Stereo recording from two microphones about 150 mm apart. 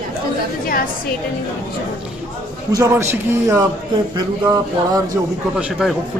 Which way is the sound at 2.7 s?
20° right (ahead or behind).